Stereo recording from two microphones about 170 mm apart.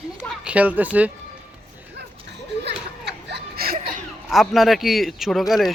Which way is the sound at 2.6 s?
80° right.